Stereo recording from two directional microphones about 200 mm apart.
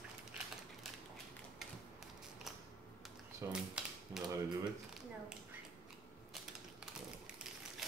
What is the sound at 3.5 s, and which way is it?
Typewriter, 5° right (ahead or behind).